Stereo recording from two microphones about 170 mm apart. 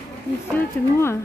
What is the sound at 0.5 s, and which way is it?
Speech, 15° left (ahead or behind).